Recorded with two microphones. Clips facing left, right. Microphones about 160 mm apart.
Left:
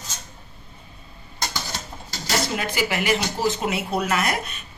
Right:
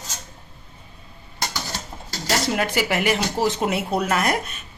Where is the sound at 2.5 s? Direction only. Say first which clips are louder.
Right 3 dB; 55° right (ahead or behind).